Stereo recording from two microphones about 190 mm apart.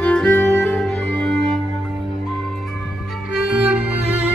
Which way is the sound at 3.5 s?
5° right (ahead or behind).